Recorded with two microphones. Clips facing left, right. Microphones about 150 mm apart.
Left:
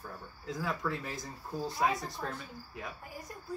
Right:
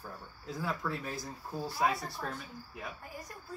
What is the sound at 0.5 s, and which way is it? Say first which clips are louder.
Speech: left 1 dB; centre (ahead or behind).